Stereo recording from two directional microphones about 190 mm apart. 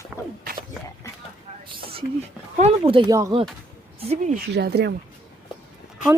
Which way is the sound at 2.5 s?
30° right (ahead or behind).